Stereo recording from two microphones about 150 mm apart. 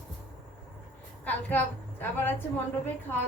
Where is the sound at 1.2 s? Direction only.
10° left (ahead or behind).